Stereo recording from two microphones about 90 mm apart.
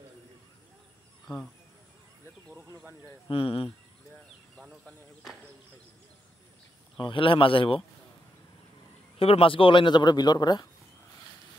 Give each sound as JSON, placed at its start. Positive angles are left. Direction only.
{"t": 1.2, "sound": "speech", "side_deg": 5}
{"t": 3.3, "sound": "speech", "side_deg": 90}
{"t": 7.0, "sound": "a man's voice", "side_deg": 70}
{"t": 9.2, "sound": "a man's voice", "side_deg": 90}